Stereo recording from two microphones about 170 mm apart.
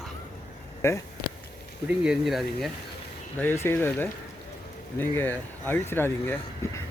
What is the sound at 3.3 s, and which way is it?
Speech, 15° left (ahead or behind).